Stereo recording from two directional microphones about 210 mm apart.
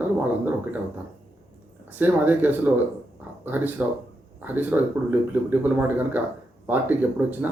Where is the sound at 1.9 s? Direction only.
10° right (ahead or behind).